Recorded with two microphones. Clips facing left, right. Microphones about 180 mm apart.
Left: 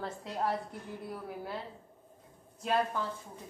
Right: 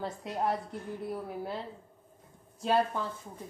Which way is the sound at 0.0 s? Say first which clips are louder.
Right 2 dB; 20° right (ahead or behind).